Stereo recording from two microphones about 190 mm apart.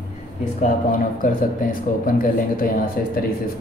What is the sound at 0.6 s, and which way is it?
Speech, 50° left (ahead or behind).